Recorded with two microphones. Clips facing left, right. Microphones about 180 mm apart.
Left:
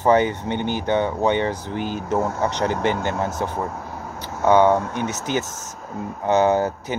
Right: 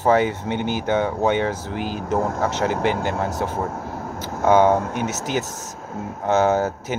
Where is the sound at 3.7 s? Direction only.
45° right (ahead or behind).